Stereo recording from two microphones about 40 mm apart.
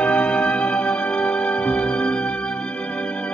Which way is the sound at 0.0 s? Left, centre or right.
Left.